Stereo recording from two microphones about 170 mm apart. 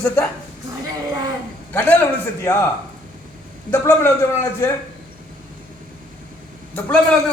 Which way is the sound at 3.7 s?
15° left (ahead or behind).